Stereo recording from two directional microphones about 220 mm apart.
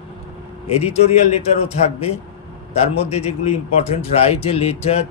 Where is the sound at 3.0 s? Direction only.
30° left (ahead or behind).